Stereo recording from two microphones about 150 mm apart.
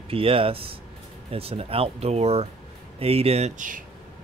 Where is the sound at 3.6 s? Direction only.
65° right (ahead or behind).